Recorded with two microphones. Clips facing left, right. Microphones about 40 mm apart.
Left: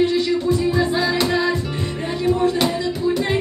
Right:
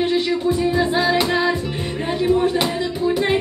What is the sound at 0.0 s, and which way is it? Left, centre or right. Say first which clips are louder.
Music: left 1 dB; right.